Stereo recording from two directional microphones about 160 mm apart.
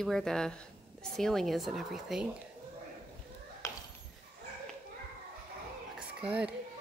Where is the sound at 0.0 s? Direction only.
5° left (ahead or behind).